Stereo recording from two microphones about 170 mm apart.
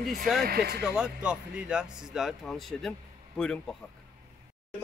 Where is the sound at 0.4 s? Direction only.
65° right (ahead or behind).